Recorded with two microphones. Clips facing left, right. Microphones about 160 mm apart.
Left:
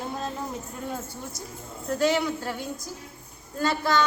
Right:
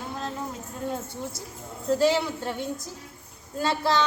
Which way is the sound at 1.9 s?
30° right (ahead or behind).